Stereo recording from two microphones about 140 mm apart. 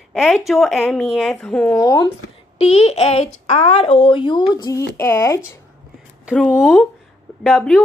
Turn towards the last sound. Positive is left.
turn(degrees=0)  # may be behind; listen again after turning